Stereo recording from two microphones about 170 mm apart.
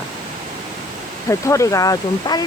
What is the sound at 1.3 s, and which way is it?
Speech, 20° left (ahead or behind).